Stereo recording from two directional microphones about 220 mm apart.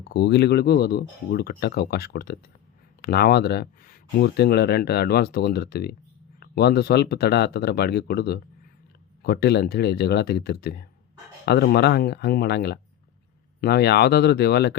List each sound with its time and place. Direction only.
0.1 s speech: 50° left (ahead or behind)